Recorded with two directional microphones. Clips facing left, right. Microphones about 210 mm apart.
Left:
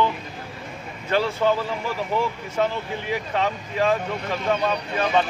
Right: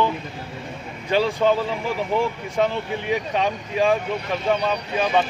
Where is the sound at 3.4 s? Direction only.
15° right (ahead or behind).